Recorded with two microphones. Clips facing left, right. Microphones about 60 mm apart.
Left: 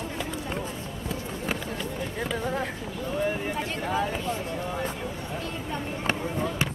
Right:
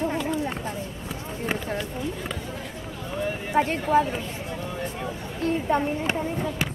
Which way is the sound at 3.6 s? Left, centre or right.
Right.